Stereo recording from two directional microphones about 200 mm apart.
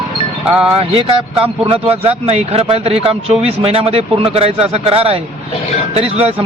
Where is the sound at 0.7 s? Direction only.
30° right (ahead or behind).